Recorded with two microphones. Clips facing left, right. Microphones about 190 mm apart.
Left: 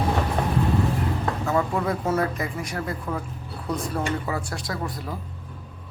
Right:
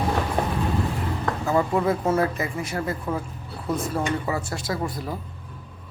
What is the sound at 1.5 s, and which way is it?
Speech, 5° right (ahead or behind).